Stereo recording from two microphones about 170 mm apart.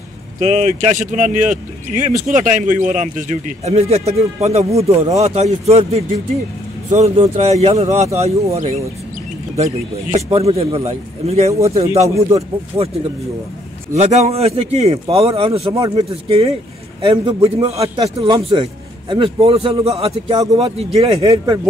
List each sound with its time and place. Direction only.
0.4 s a man's voice: 45° right (ahead or behind)
10.1 s a man's voice: 35° right (ahead or behind)
13.9 s a man's voice: 40° right (ahead or behind)
17.8 s a man's voice: 25° right (ahead or behind)